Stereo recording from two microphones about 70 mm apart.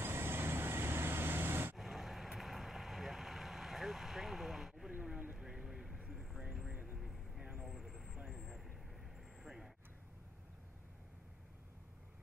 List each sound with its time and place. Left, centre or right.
0.0 s vehicle: right
1.8 s vehicle: centre
7.1 s vehicle: centre